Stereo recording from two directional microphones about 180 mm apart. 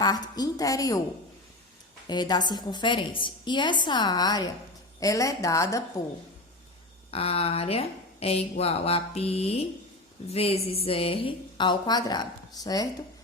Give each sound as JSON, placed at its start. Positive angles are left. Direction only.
{"t": 0.0, "sound": "a woman's voice", "side_deg": 20}
{"t": 2.0, "sound": "a woman's voice", "side_deg": 25}
{"t": 7.1, "sound": "a woman's voice", "side_deg": 35}